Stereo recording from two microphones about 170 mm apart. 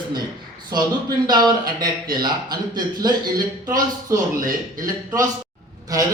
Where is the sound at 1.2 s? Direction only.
25° right (ahead or behind).